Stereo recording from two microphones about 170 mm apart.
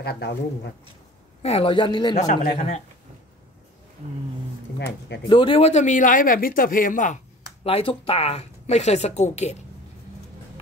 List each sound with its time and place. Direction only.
0.0 s speech: 75° left (ahead or behind)
1.4 s speech: 35° left (ahead or behind)
2.5 s a man's voice: 40° left (ahead or behind)
4.7 s speech: 90° left
5.3 s a man's voice: 30° left (ahead or behind); by 7.2 s 50° left (ahead or behind)
7.6 s speech: 35° left (ahead or behind)